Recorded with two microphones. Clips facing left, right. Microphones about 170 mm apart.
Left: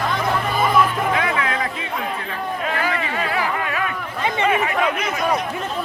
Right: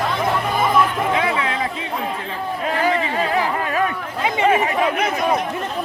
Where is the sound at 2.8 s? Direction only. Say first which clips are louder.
Right 4 dB; 30° right (ahead or behind).